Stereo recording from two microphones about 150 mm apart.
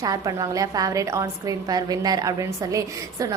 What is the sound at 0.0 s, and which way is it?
A woman's voice, 25° right (ahead or behind).